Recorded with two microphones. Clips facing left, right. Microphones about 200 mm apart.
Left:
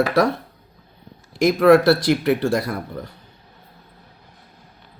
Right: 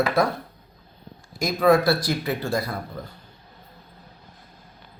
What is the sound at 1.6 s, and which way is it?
Speech, 85° left.